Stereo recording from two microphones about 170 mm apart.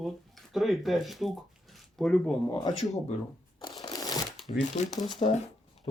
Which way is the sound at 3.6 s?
30° left (ahead or behind).